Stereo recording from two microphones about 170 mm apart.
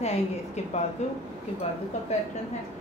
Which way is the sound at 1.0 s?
40° left (ahead or behind).